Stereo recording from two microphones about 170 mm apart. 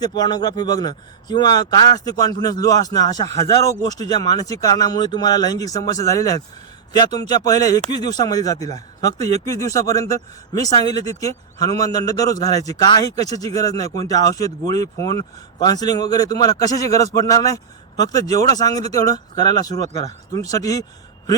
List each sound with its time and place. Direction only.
0.0 s a man's voice: 25° left (ahead or behind)